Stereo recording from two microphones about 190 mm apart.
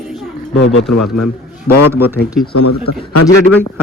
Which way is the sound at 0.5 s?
75° left (ahead or behind).